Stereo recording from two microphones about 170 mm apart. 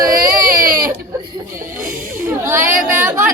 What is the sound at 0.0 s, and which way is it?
Baby cry, 55° right (ahead or behind).